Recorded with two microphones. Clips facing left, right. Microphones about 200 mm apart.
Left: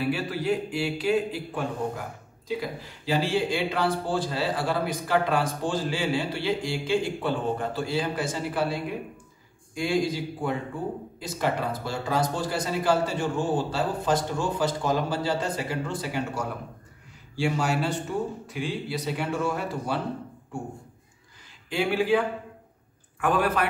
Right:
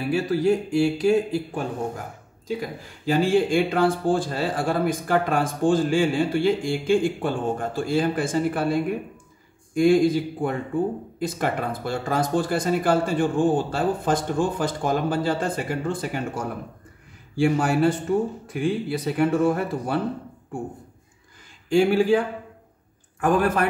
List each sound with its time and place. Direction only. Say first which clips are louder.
0.1 s speech: right 6 dB; 45° right (ahead or behind)
3.1 s speech: right 5 dB; 50° right (ahead or behind)
21.6 s speech: right 6 dB; 45° right (ahead or behind)
23.2 s speech: right 4 dB; 45° right (ahead or behind)